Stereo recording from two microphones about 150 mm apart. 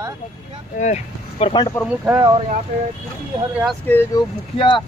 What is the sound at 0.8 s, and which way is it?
Speech, 45° left (ahead or behind).